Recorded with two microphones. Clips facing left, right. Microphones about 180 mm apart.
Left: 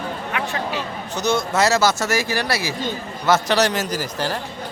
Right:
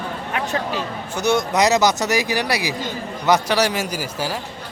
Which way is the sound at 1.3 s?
15° right (ahead or behind).